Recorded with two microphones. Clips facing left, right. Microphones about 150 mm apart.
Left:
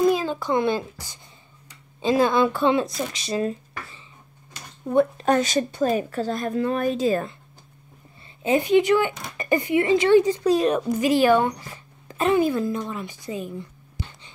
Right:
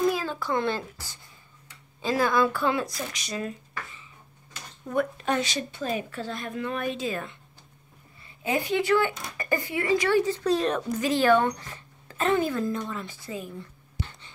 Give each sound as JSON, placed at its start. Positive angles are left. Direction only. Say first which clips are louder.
{"t": 0.0, "sound": "a child's voice", "louder": "left 5 dB", "side_deg": 20}
{"t": 5.2, "sound": "speech", "louder": "left 7 dB", "side_deg": 45}
{"t": 8.5, "sound": "speech", "louder": "left 6 dB", "side_deg": 20}